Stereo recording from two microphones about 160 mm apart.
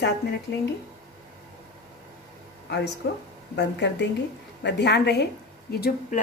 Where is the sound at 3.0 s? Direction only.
90° left.